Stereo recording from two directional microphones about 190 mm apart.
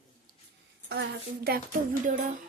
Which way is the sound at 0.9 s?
55° right (ahead or behind).